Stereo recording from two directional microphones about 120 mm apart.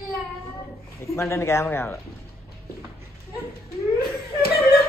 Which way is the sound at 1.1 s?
25° left (ahead or behind).